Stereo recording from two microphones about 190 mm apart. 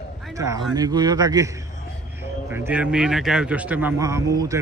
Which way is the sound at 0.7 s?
20° right (ahead or behind).